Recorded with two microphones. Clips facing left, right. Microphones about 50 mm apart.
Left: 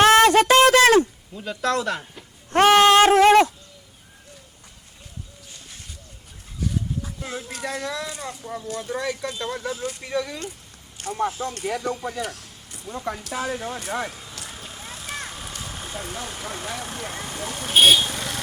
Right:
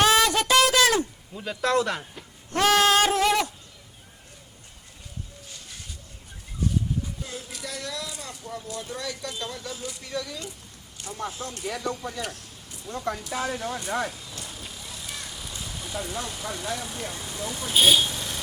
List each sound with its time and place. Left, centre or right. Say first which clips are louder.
0.0 s a sound: left 7 dB; left
1.3 s speech: even; centre
2.5 s goat: left 6 dB; left
7.3 s speech: left 6 dB; left
10.9 s speech: left 7 dB; left
11.2 s speech: left 7 dB; left
12.9 s speech: left 1 dB; centre
14.5 s vehicle: left 2 dB; left
16.2 s speech: left 1 dB; left